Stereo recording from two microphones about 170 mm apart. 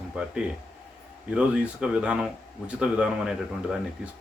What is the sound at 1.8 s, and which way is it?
Speech, 5° right (ahead or behind).